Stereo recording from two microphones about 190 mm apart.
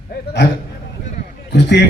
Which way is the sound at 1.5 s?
65° left (ahead or behind).